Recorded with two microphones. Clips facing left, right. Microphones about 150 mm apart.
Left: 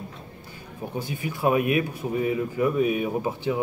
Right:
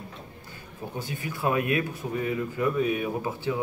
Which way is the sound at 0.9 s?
15° left (ahead or behind).